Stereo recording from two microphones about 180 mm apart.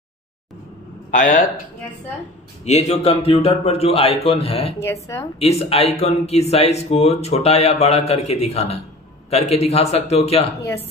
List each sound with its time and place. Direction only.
1.1 s a man's voice: 45° left (ahead or behind)
2.6 s speech: 40° left (ahead or behind)
4.7 s speech: 15° left (ahead or behind)
5.4 s speech: 35° left (ahead or behind)